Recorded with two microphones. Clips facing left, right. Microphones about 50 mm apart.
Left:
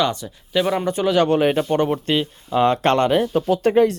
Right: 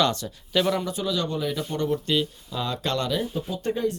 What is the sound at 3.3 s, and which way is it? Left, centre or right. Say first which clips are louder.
Speech: left 12 dB; left.